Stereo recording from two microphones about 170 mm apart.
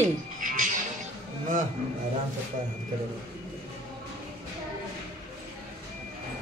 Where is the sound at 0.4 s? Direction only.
50° right (ahead or behind).